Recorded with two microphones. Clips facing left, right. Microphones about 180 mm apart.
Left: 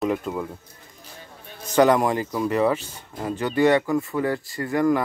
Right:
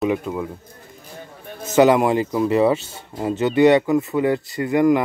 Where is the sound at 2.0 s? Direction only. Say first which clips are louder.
Right 5 dB; 25° right (ahead or behind).